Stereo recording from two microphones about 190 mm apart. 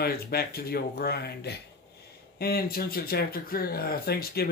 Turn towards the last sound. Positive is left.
turn(degrees=55)  # may be behind; listen again after turning